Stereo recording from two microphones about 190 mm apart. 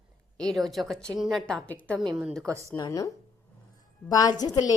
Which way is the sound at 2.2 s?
5° right (ahead or behind).